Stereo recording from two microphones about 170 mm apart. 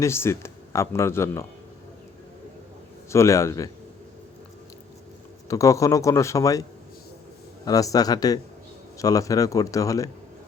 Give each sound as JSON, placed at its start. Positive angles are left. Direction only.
{"t": 0.0, "sound": "a man's voice", "side_deg": 15}
{"t": 3.1, "sound": "a man's voice", "side_deg": 15}
{"t": 5.5, "sound": "a man's voice", "side_deg": 20}